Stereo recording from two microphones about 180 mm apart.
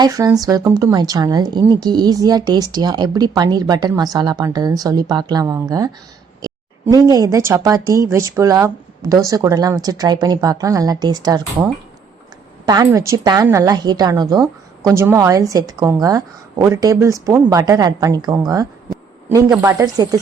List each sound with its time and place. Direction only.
0.0 s speech: 20° right (ahead or behind)
12.6 s speech: 20° right (ahead or behind)